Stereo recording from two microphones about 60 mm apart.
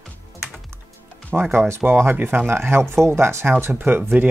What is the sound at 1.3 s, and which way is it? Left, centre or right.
Speech, right.